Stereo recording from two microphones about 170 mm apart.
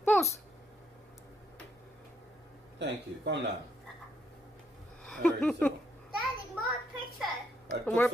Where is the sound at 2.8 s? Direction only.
90° right.